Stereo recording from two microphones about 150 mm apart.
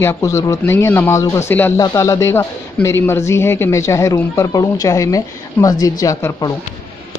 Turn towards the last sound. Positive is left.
turn(degrees=20)  # may be behind; listen again after turning